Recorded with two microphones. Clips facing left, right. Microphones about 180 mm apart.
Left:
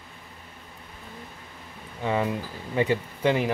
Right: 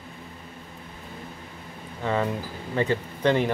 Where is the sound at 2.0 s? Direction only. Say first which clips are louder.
Even; 10° left (ahead or behind).